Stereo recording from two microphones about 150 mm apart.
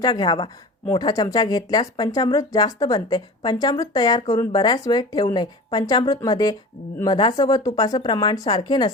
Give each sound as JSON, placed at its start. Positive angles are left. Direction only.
{"t": 0.0, "sound": "speech", "side_deg": 30}